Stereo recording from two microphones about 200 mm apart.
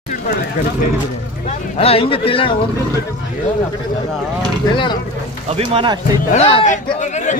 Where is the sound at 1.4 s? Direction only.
35° left (ahead or behind).